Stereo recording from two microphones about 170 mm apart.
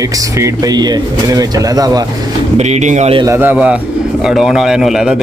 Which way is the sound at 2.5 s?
40° right (ahead or behind).